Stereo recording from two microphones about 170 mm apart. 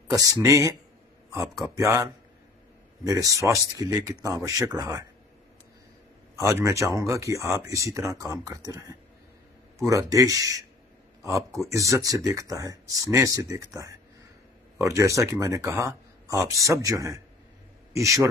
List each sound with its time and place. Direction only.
0.1 s speech: 20° right (ahead or behind)
1.8 s speech: 15° right (ahead or behind)
6.3 s speech: 15° right (ahead or behind)